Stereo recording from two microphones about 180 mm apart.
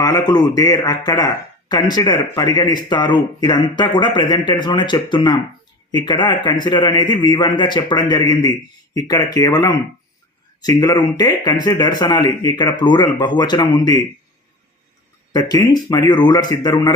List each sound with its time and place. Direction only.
0.0 s speech: 20° left (ahead or behind)
15.3 s speech: 20° left (ahead or behind)